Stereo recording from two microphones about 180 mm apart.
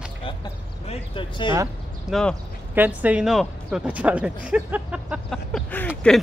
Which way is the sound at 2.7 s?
10° right (ahead or behind).